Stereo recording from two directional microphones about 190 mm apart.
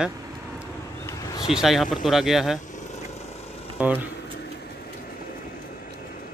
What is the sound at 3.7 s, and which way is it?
Speech, 10° right (ahead or behind).